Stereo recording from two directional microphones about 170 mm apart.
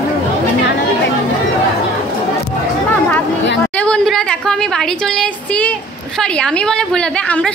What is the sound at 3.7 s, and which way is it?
A woman's voice, 5° left (ahead or behind).